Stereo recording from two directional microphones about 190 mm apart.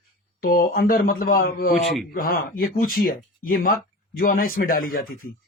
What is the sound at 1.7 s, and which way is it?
Speech, centre (ahead or behind).